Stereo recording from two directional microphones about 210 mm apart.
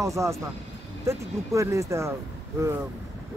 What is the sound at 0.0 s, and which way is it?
Speech, 15° right (ahead or behind).